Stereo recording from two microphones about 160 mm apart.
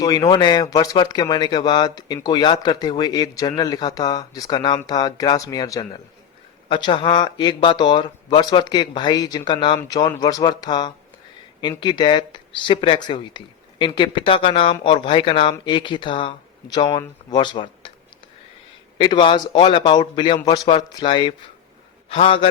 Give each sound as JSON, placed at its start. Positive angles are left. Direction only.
{"t": 0.0, "sound": "speech", "side_deg": 25}
{"t": 18.9, "sound": "speech", "side_deg": 30}